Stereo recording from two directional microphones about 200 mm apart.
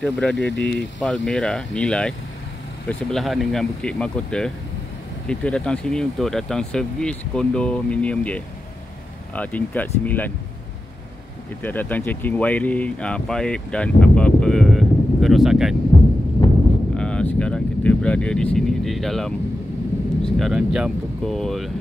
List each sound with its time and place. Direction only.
0.0 s speech: 5° left (ahead or behind)
11.6 s speech: 10° left (ahead or behind)
15.9 s a sound: 25° left (ahead or behind)
16.9 s vehicle: 5° left (ahead or behind)
20.2 s speech: centre (ahead or behind)